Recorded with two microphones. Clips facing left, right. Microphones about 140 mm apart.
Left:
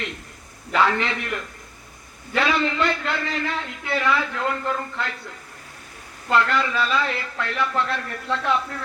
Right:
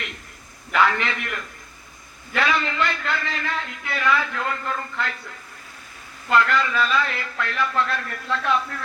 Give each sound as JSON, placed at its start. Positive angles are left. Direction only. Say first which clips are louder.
{"t": 0.7, "sound": "a man's voice", "louder": "even", "side_deg": 25}
{"t": 6.3, "sound": "a man's voice", "louder": "right 1 dB", "side_deg": 25}